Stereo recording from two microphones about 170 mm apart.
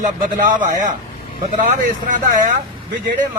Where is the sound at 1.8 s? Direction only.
50° right (ahead or behind).